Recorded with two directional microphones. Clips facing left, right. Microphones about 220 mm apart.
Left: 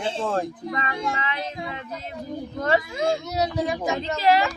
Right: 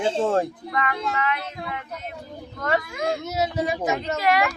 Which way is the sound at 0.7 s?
25° left (ahead or behind).